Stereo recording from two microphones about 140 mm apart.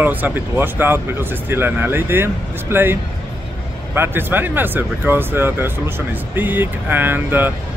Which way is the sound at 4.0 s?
15° right (ahead or behind).